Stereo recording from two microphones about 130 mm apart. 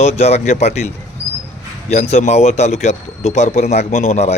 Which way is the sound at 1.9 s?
55° left (ahead or behind).